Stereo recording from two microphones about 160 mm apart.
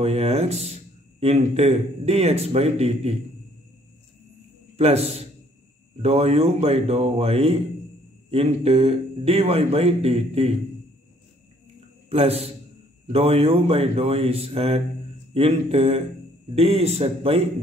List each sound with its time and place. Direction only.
0.0 s speech: 40° right (ahead or behind)
4.7 s speech: 40° right (ahead or behind)
12.1 s speech: 40° right (ahead or behind)